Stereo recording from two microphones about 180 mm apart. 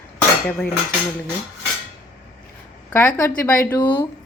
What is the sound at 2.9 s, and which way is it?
A woman's voice, 15° left (ahead or behind).